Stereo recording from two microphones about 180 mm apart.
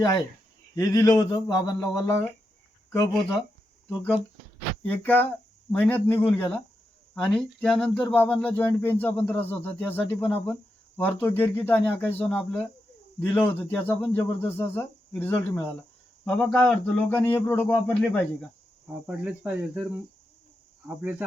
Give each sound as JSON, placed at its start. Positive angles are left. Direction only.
{"t": 0.8, "sound": "a man's voice", "side_deg": 20}
{"t": 3.8, "sound": "speech", "side_deg": -5}
{"t": 4.9, "sound": "speech", "side_deg": 10}
{"t": 19.0, "sound": "speech", "side_deg": -10}